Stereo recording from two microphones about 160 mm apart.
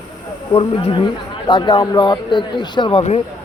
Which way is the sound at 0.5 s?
35° left (ahead or behind).